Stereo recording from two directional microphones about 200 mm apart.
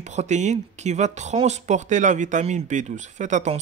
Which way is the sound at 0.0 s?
35° right (ahead or behind).